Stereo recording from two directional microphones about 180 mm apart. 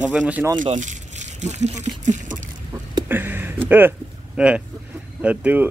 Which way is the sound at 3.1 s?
10° right (ahead or behind).